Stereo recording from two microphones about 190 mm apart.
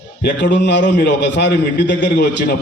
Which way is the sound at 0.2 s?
65° left (ahead or behind).